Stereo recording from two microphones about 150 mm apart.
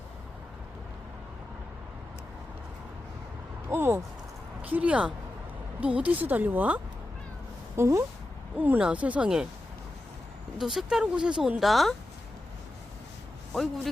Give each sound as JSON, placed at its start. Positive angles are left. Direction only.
{"t": 3.7, "sound": "a sound", "side_deg": -15}
{"t": 4.6, "sound": "a woman's voice", "side_deg": -10}
{"t": 10.6, "sound": "a woman's voice", "side_deg": 0}
{"t": 13.5, "sound": "a woman's voice", "side_deg": 0}